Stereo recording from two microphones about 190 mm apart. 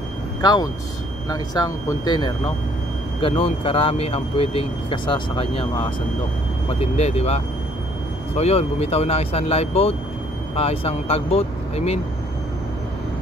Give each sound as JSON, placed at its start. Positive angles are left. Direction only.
{"t": 0.4, "sound": "speech", "side_deg": 20}